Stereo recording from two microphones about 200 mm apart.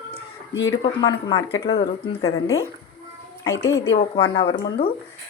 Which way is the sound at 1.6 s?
25° left (ahead or behind).